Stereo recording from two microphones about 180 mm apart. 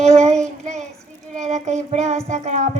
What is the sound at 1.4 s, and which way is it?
Child singing, 40° right (ahead or behind).